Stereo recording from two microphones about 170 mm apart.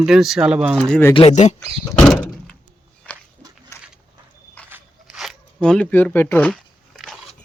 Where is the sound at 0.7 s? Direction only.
10° left (ahead or behind).